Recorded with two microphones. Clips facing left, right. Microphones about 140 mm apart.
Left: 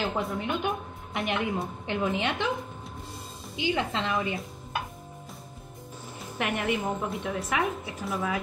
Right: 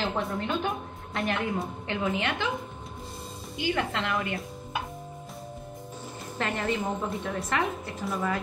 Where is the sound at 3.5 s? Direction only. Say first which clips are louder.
Even; 20° left (ahead or behind).